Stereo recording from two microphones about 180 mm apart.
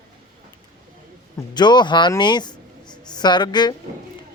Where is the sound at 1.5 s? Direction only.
25° left (ahead or behind).